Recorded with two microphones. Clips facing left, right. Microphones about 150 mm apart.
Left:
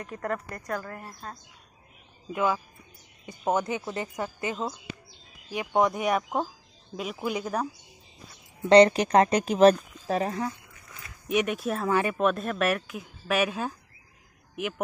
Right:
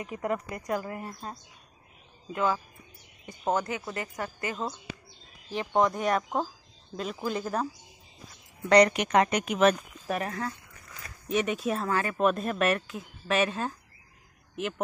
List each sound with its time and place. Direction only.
0.0 s speech: 10° right (ahead or behind)
2.3 s speech: 10° left (ahead or behind)
8.6 s speech: 25° left (ahead or behind)
11.2 s speech: 10° left (ahead or behind)
12.2 s speech: centre (ahead or behind)